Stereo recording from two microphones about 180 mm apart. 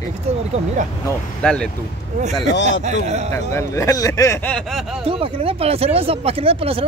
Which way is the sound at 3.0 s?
40° right (ahead or behind).